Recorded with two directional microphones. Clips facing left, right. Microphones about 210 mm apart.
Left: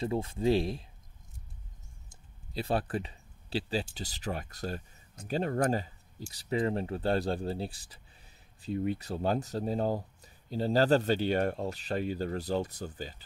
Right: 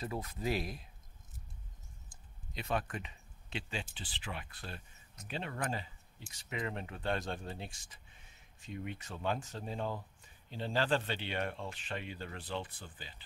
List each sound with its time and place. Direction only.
0.0 s speech: 30° left (ahead or behind)
2.5 s speech: 35° left (ahead or behind)